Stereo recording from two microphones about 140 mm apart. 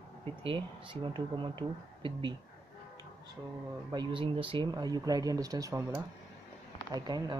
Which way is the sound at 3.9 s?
35° right (ahead or behind).